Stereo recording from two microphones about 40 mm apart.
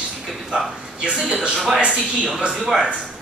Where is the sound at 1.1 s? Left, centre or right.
Centre.